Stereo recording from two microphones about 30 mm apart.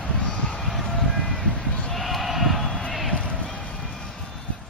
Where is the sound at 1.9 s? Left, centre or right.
Centre.